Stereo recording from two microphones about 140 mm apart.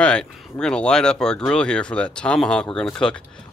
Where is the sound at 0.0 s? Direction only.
5° left (ahead or behind).